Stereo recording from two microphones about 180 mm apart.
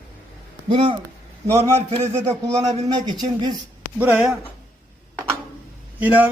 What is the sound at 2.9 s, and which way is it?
Speech, 25° right (ahead or behind).